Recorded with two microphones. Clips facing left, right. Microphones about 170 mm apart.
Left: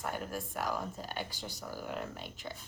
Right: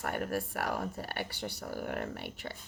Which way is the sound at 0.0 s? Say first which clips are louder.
Right 4 dB; 65° right (ahead or behind).